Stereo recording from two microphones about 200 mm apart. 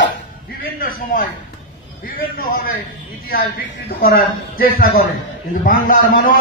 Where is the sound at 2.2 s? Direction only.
50° left (ahead or behind).